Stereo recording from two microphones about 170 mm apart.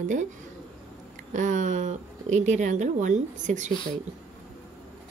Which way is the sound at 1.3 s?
45° right (ahead or behind).